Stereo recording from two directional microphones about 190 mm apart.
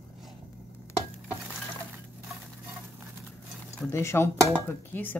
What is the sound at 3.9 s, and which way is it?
Speech, 15° left (ahead or behind).